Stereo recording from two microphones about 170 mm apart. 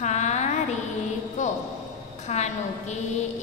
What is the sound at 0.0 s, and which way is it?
Music, 45° left (ahead or behind).